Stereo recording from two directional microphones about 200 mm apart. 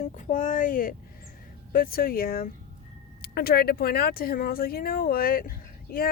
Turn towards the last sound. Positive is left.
turn(degrees=50)  # may be behind; listen again after turning